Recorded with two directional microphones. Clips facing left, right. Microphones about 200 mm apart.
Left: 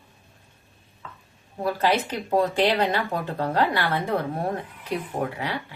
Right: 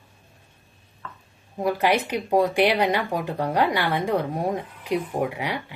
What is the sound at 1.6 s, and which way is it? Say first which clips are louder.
Speech: right 1 dB; 15° right (ahead or behind).